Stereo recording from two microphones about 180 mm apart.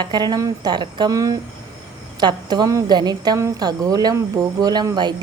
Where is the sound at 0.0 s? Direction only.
25° right (ahead or behind).